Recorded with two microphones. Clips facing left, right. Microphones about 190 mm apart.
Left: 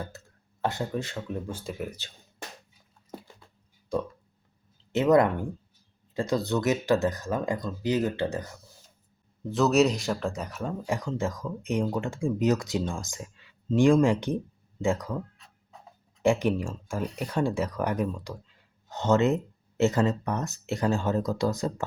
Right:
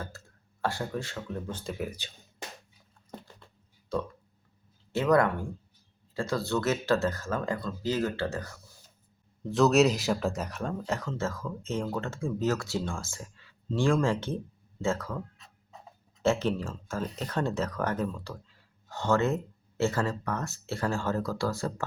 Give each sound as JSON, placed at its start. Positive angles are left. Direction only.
{"t": 0.6, "sound": "speech", "side_deg": 20}
{"t": 3.9, "sound": "a sound", "side_deg": 15}
{"t": 4.9, "sound": "speech", "side_deg": 20}
{"t": 9.5, "sound": "speech", "side_deg": 0}
{"t": 16.2, "sound": "speech", "side_deg": 15}